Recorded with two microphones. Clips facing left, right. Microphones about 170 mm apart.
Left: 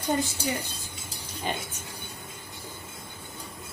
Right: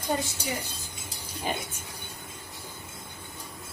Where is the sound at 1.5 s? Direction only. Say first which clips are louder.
Even; 5° right (ahead or behind).